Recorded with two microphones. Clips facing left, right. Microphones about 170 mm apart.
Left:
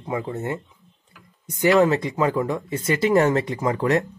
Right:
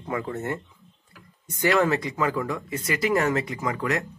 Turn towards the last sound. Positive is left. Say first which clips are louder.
# left 6 dB
turn(degrees=30)  # may be behind; listen again after turning